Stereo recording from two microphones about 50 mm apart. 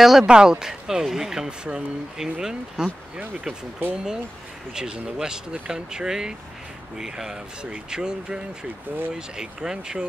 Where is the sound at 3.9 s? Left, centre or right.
Centre.